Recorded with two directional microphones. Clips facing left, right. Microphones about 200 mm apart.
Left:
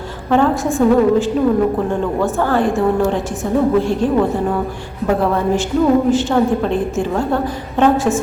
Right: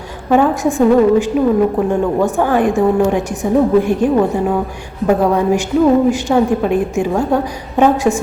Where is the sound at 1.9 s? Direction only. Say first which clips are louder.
Right 3 dB; 15° right (ahead or behind).